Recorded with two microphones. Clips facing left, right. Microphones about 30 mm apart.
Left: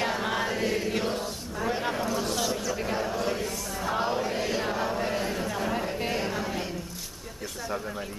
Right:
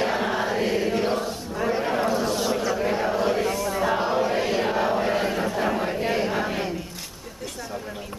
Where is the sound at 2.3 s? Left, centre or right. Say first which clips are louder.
Right 5 dB; right.